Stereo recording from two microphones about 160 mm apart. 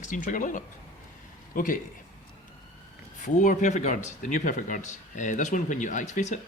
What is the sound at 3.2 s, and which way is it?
Speech, 50° left (ahead or behind).